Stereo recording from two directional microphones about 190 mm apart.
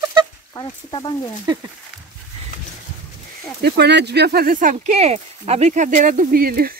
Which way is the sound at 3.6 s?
60° right (ahead or behind).